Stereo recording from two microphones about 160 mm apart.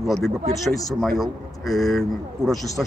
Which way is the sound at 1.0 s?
Centre (ahead or behind).